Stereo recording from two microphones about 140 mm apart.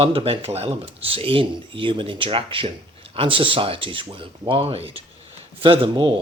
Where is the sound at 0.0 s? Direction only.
40° right (ahead or behind).